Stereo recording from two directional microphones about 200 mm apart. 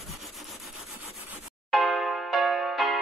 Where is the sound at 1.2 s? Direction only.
5° right (ahead or behind).